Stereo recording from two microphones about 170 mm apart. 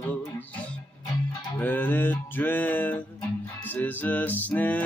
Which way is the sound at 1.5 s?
10° left (ahead or behind).